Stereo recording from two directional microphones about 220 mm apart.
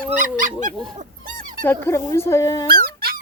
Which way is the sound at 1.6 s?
10° left (ahead or behind).